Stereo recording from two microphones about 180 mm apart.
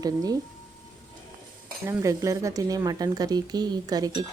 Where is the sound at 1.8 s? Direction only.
15° right (ahead or behind).